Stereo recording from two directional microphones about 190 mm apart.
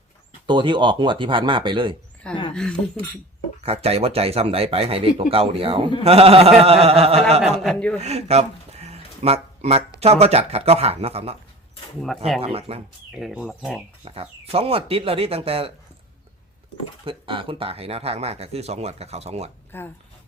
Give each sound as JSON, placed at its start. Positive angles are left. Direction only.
{"t": 0.4, "sound": "speech", "side_deg": -25}
{"t": 2.5, "sound": "speech", "side_deg": 5}
{"t": 3.6, "sound": "speech", "side_deg": -30}
{"t": 7.6, "sound": "speech", "side_deg": 5}
{"t": 7.9, "sound": "a sound", "side_deg": -35}
{"t": 10.0, "sound": "speech", "side_deg": -35}
{"t": 12.4, "sound": "speech", "side_deg": -30}
{"t": 13.1, "sound": "speech", "side_deg": 0}
{"t": 14.0, "sound": "speech", "side_deg": -30}
{"t": 17.1, "sound": "speech", "side_deg": -25}
{"t": 19.7, "sound": "speech", "side_deg": 10}